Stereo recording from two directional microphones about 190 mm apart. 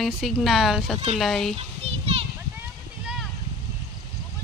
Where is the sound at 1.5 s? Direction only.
30° right (ahead or behind).